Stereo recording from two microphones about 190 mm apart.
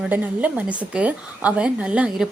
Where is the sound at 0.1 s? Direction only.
10° right (ahead or behind).